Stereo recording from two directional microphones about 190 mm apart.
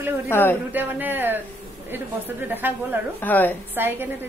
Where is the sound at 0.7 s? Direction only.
10° right (ahead or behind).